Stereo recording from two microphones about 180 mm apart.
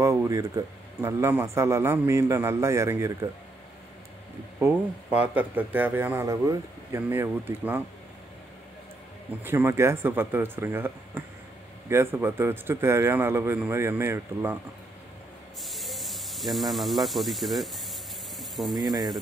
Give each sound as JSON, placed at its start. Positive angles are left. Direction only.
{"t": 0.0, "sound": "speech", "side_deg": -15}
{"t": 5.2, "sound": "speech", "side_deg": -10}
{"t": 9.4, "sound": "speech", "side_deg": -10}
{"t": 15.7, "sound": "speech", "side_deg": 0}